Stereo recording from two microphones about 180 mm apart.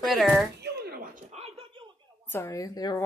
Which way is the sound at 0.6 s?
60° right (ahead or behind).